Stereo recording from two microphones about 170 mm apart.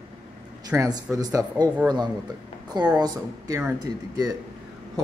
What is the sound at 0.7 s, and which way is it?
Speech, 20° right (ahead or behind).